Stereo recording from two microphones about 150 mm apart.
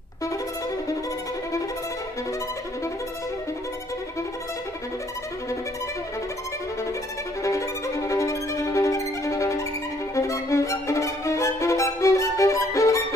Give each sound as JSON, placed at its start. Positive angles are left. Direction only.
{"t": 7.4, "sound": "violin", "side_deg": 20}